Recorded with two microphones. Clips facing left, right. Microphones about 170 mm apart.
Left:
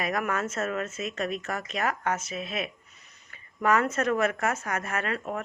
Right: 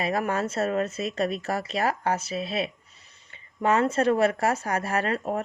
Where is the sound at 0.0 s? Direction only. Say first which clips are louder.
Right 3 dB; 30° right (ahead or behind).